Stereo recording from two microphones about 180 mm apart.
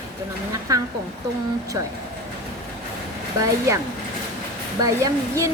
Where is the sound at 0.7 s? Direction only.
20° right (ahead or behind).